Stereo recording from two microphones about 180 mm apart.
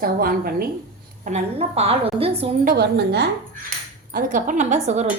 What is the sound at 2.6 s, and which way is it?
Speech, 65° right (ahead or behind).